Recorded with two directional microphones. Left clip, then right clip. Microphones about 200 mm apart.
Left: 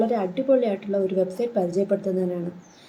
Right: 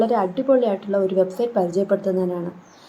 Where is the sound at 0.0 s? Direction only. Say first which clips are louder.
Right 4 dB; 5° left (ahead or behind).